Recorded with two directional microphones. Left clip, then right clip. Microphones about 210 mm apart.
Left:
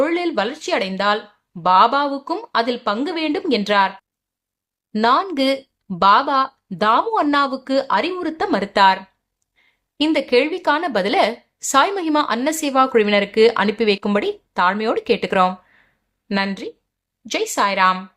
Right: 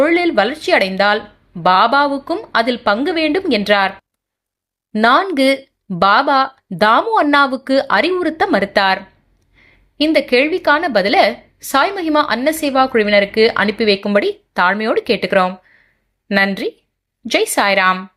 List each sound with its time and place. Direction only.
0.0 s speech: 10° right (ahead or behind)
4.9 s speech: 10° right (ahead or behind)
17.3 s speech: 15° right (ahead or behind)